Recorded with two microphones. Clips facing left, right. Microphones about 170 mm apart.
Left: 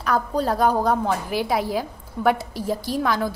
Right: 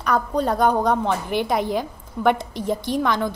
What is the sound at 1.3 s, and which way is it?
A woman's voice, 5° left (ahead or behind).